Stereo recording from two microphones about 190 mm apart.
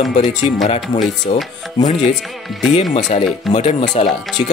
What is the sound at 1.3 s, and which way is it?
Speech, 35° left (ahead or behind).